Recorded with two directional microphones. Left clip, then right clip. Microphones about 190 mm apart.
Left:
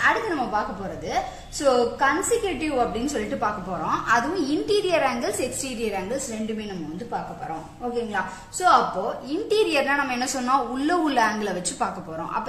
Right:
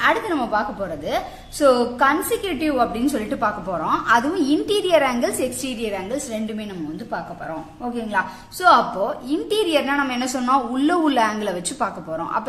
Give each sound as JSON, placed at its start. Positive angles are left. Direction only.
{"t": 0.0, "sound": "a woman's voice", "side_deg": -35}
{"t": 8.1, "sound": "a woman's voice", "side_deg": -50}
{"t": 9.5, "sound": "a woman's voice", "side_deg": -25}